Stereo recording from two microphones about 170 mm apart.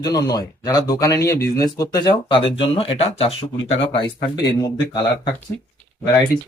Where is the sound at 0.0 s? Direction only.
20° left (ahead or behind).